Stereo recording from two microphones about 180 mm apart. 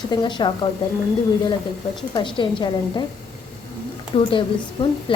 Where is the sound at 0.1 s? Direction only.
25° left (ahead or behind).